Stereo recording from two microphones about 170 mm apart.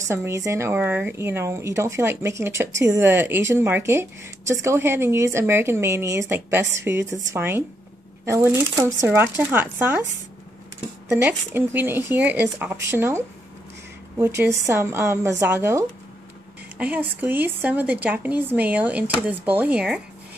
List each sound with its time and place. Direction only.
0.0 s a woman's voice: 15° right (ahead or behind)
11.1 s a woman's voice: 10° right (ahead or behind)